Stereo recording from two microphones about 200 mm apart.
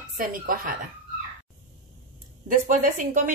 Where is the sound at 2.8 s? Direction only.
40° right (ahead or behind).